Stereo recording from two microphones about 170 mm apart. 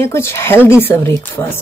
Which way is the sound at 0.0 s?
15° left (ahead or behind).